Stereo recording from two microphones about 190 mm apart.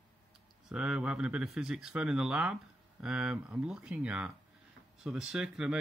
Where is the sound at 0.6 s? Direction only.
5° right (ahead or behind).